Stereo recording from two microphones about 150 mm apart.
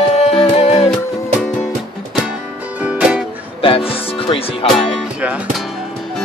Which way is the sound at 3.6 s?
40° left (ahead or behind).